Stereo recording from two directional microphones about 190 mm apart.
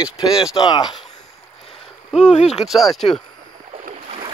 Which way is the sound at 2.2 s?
35° left (ahead or behind).